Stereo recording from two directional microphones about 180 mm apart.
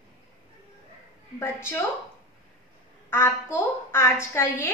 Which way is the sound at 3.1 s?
15° left (ahead or behind).